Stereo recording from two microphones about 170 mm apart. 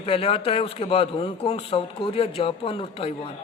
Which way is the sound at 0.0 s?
35° left (ahead or behind).